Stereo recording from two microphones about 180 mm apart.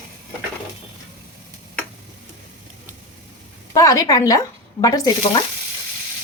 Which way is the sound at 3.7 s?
20° left (ahead or behind).